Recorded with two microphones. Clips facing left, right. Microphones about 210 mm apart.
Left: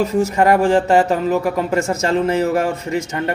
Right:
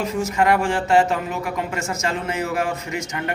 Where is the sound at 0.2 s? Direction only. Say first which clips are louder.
Left 4 dB; 35° left (ahead or behind).